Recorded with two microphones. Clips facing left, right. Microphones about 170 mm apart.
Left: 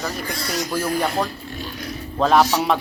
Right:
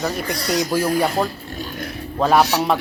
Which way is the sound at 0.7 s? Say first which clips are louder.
Right 2 dB; 10° right (ahead or behind).